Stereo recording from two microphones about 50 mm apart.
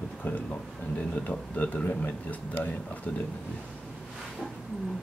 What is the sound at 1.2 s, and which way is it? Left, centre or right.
Speech, left.